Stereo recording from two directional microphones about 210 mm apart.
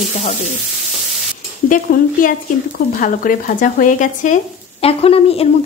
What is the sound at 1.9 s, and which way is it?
A woman's voice, 45° left (ahead or behind).